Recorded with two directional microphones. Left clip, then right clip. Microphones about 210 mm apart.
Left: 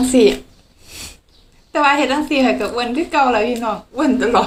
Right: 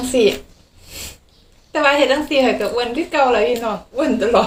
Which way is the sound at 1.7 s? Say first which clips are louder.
Even; 15° left (ahead or behind).